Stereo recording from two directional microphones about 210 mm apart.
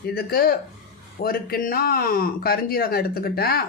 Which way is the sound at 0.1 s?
45° left (ahead or behind).